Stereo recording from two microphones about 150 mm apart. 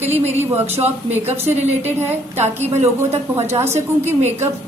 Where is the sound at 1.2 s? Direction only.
45° right (ahead or behind).